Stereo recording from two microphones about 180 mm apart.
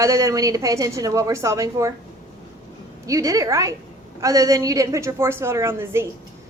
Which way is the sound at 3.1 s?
20° right (ahead or behind).